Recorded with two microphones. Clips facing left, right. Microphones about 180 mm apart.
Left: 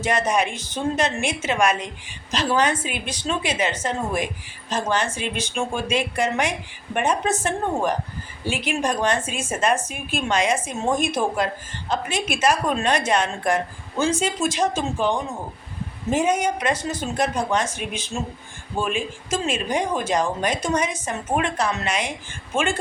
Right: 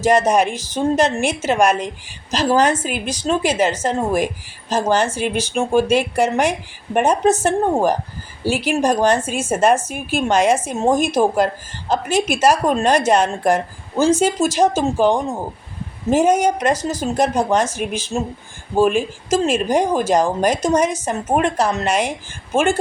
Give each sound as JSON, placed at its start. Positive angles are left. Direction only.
{"t": 0.0, "sound": "speech", "side_deg": -40}
{"t": 12.0, "sound": "a woman's voice", "side_deg": 0}
{"t": 12.4, "sound": "speech", "side_deg": -45}